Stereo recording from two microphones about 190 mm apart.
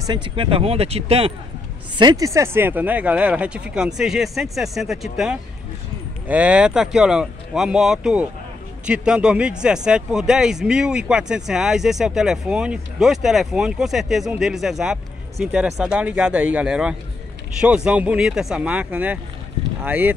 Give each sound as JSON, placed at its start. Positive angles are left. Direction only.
{"t": 0.0, "sound": "speech", "side_deg": -25}
{"t": 2.0, "sound": "speech", "side_deg": -20}